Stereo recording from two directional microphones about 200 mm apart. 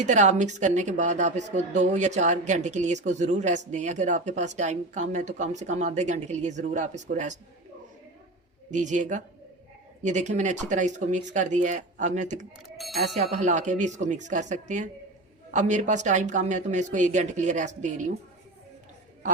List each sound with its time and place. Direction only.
0.0 s speech: 35° right (ahead or behind)
8.7 s speech: 40° right (ahead or behind)
12.7 s speech: centre (ahead or behind)
13.3 s speech: 35° right (ahead or behind)